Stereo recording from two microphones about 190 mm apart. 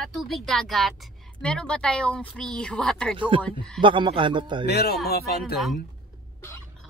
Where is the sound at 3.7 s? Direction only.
25° right (ahead or behind).